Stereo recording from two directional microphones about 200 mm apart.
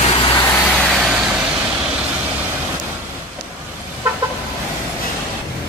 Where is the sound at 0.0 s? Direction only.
25° left (ahead or behind).